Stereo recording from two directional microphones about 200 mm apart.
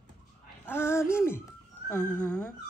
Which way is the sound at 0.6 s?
10° left (ahead or behind).